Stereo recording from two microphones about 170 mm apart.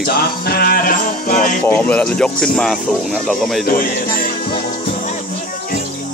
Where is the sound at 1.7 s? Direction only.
10° left (ahead or behind).